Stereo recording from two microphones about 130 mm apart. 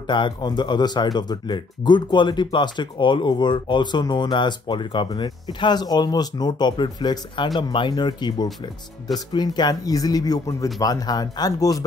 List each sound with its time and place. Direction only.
0.0 s speech: 35° left (ahead or behind)